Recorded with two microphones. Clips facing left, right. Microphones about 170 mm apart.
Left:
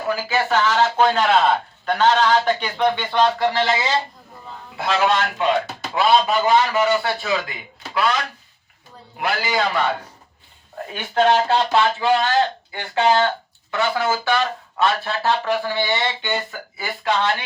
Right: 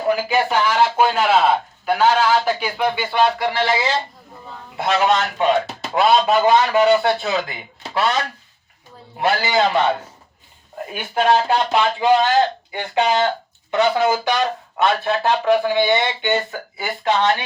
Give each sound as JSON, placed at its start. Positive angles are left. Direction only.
{"t": 0.1, "sound": "speech", "side_deg": -15}
{"t": 4.9, "sound": "speech", "side_deg": -20}
{"t": 9.2, "sound": "speech", "side_deg": -25}
{"t": 10.9, "sound": "speech", "side_deg": -10}